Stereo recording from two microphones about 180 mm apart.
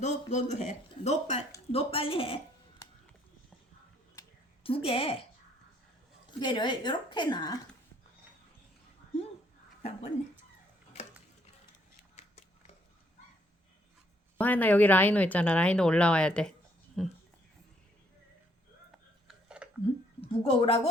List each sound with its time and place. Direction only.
0.0 s speech: 40° left (ahead or behind)
4.6 s speech: 30° left (ahead or behind)
6.4 s a woman's voice: 25° left (ahead or behind)
12.1 s a sound: 40° left (ahead or behind)
14.3 s speech: 10° left (ahead or behind)
19.3 s a sound: 5° right (ahead or behind)
20.2 s speech: 30° left (ahead or behind)